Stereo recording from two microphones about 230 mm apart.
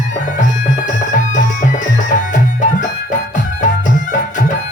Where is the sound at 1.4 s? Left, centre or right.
Left.